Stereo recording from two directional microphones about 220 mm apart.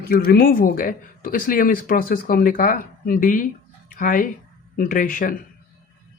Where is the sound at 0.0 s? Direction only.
45° left (ahead or behind).